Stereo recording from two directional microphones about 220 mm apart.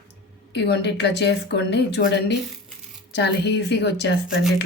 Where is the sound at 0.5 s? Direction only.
50° left (ahead or behind).